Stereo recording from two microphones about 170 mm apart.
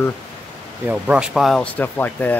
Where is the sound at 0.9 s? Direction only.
5° right (ahead or behind); by 2.4 s 10° left (ahead or behind).